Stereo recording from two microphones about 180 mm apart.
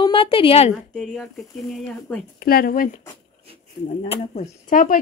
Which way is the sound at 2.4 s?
55° left (ahead or behind).